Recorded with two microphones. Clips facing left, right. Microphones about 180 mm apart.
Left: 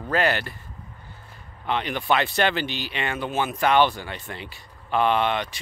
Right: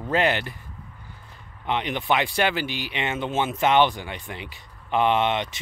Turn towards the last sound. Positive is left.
turn(degrees=-20)  # may be behind; listen again after turning